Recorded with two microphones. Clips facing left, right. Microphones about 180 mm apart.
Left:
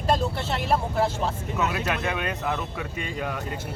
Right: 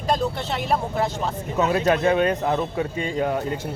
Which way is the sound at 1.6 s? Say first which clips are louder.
Right 8 dB; 35° right (ahead or behind).